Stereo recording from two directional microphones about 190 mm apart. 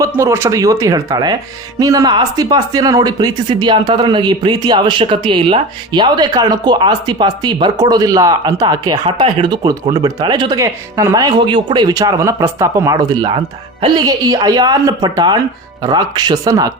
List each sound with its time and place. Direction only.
0.0 s speech: 15° right (ahead or behind)